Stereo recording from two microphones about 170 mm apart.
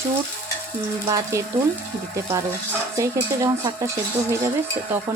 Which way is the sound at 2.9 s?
15° right (ahead or behind).